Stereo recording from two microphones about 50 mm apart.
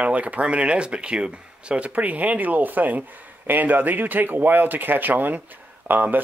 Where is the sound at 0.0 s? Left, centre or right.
Right.